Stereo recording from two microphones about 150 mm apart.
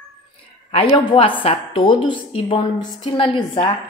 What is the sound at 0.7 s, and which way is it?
A woman's voice, 35° left (ahead or behind).